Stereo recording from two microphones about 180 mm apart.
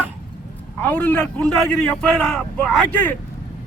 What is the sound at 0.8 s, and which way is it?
A man's voice, 10° left (ahead or behind).